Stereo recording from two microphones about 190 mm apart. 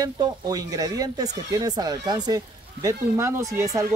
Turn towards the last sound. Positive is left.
turn(degrees=-15)  # may be behind; listen again after turning